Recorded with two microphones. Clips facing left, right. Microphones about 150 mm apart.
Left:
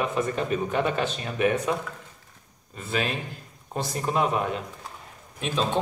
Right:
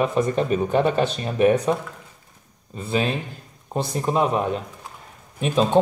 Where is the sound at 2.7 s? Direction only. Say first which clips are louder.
Right 5 dB; 25° right (ahead or behind).